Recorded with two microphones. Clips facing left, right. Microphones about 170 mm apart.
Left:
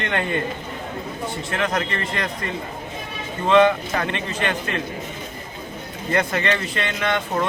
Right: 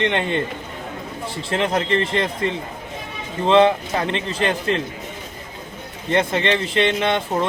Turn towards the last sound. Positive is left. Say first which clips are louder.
# right 3 dB
turn(degrees=-25)  # may be behind; listen again after turning